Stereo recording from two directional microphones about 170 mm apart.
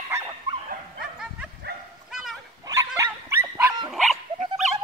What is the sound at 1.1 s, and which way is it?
Bow-wow, 5° right (ahead or behind).